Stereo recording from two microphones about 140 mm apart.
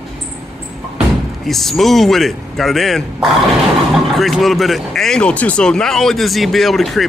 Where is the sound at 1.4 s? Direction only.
Centre (ahead or behind).